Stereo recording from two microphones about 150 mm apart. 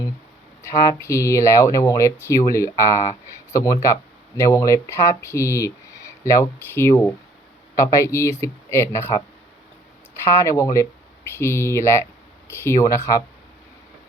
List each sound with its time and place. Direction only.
0.6 s speech: 20° left (ahead or behind)
10.2 s speech: 20° left (ahead or behind)